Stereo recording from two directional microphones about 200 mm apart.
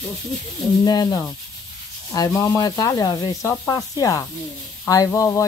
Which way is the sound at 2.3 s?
15° left (ahead or behind).